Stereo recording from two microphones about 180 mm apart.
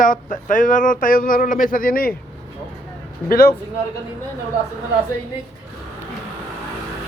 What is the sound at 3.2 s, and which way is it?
Speech, 55° left (ahead or behind).